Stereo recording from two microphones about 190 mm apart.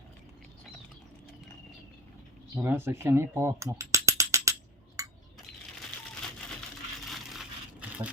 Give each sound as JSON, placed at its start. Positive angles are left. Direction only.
{"t": 2.6, "sound": "speech", "side_deg": -10}
{"t": 5.0, "sound": "a sound", "side_deg": -15}
{"t": 7.1, "sound": "crushing", "side_deg": -5}